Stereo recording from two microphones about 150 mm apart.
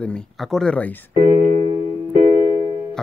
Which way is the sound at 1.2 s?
60° right (ahead or behind).